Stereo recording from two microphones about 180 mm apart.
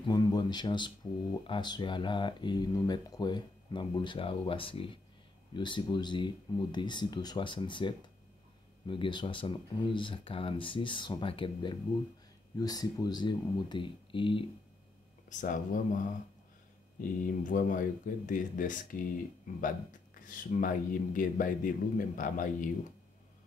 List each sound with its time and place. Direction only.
0.0 s speech: 25° left (ahead or behind)
15.2 s speech: 45° left (ahead or behind)
17.2 s speech: 50° left (ahead or behind)